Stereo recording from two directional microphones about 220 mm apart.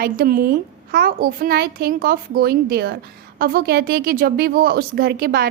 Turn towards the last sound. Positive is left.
turn(degrees=-45)  # may be behind; listen again after turning